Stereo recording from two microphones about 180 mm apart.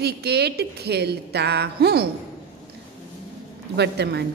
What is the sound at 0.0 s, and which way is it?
A woman's voice, 65° right (ahead or behind).